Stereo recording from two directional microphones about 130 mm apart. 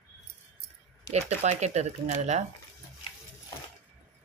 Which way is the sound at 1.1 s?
60° right (ahead or behind).